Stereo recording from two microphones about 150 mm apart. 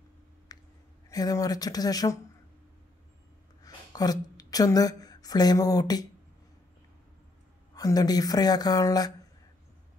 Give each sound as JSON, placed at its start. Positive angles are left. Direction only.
{"t": 0.5, "sound": "a sound", "side_deg": 25}
{"t": 1.1, "sound": "speech", "side_deg": 25}
{"t": 3.6, "sound": "a woman's voice", "side_deg": 25}
{"t": 7.7, "sound": "speech", "side_deg": 25}